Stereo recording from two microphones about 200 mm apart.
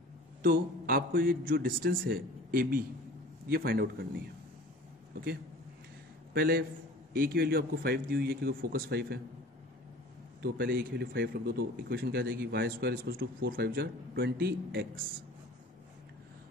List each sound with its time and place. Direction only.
0.4 s a man's voice: 45° right (ahead or behind)
6.3 s a man's voice: 45° right (ahead or behind)
10.4 s a man's voice: 50° right (ahead or behind)